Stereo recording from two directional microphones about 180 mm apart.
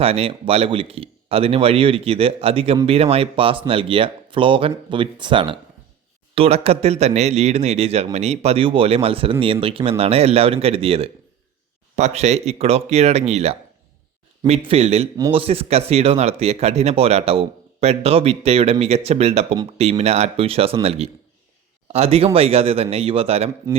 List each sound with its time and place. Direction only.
0.0 s speech: 30° right (ahead or behind)